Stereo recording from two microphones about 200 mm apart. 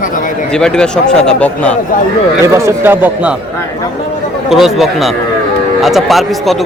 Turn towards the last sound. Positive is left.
turn(degrees=0)  # may be behind; listen again after turning